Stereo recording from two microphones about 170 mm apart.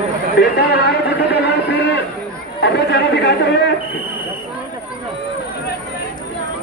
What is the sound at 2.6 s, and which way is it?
Speech, 75° left (ahead or behind).